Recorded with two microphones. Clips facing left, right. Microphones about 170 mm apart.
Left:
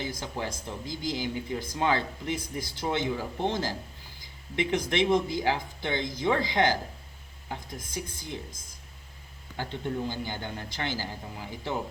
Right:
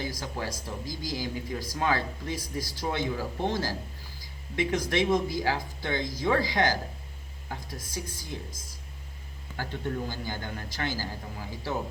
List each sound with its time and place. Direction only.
0.0 s speech: 20° left (ahead or behind)
9.6 s speech: 20° left (ahead or behind)